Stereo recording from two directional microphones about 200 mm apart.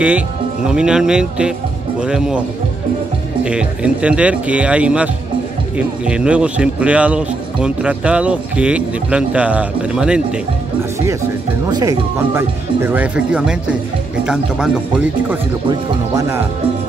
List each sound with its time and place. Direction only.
0.7 s a man's voice: 5° right (ahead or behind)
3.4 s a man's voice: 5° right (ahead or behind)
11.7 s a man's voice: 15° right (ahead or behind)